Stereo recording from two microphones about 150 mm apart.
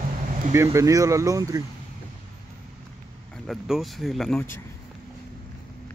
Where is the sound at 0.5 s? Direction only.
20° right (ahead or behind).